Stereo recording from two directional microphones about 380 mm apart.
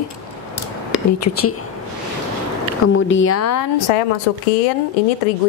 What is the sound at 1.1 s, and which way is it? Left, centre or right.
Speech, left.